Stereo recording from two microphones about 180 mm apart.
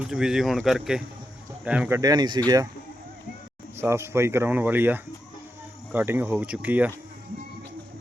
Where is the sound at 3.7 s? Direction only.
15° right (ahead or behind).